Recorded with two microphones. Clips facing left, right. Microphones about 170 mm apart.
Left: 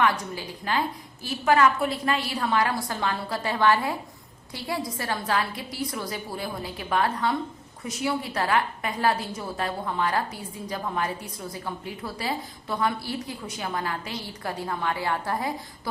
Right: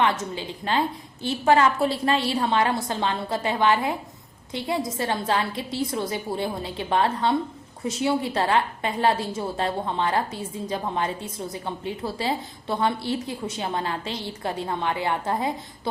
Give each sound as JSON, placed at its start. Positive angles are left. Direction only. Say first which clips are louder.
{"t": 0.0, "sound": "a woman's voice", "louder": "right 1 dB", "side_deg": -25}